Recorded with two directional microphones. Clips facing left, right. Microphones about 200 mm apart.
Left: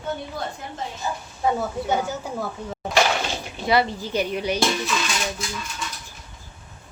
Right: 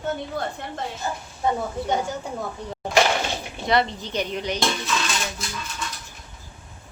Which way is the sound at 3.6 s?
5° left (ahead or behind).